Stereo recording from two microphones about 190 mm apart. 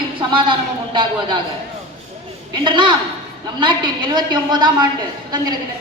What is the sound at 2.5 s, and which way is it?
A woman's voice, 25° right (ahead or behind).